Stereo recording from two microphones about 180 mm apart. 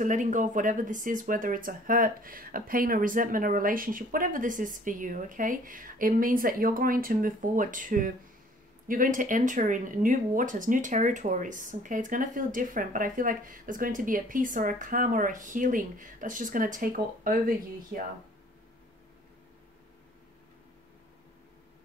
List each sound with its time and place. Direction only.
0.0 s speech: 45° right (ahead or behind)